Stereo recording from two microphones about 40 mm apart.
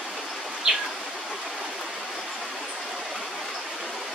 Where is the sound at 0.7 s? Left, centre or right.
Centre.